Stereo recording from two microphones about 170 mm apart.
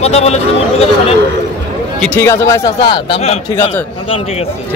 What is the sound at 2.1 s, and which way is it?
Speech, 15° left (ahead or behind).